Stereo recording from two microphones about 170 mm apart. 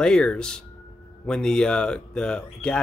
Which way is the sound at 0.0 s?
5° left (ahead or behind).